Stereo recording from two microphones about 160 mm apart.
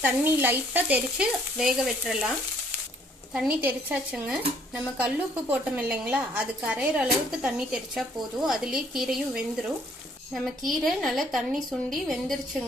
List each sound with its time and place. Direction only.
0.0 s stir: 10° right (ahead or behind)
3.3 s speech: 5° right (ahead or behind)